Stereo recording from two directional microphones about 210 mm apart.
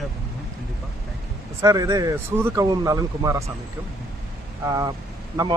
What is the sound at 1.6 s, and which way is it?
Speech, 15° right (ahead or behind).